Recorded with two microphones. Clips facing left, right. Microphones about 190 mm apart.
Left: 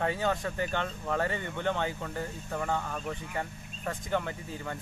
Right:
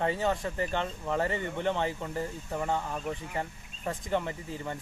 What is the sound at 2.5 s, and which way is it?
Speech, 25° right (ahead or behind).